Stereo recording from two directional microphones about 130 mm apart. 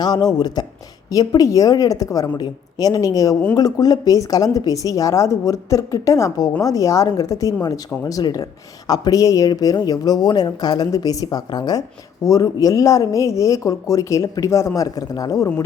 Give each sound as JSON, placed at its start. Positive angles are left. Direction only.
{"t": 0.0, "sound": "speech", "side_deg": 30}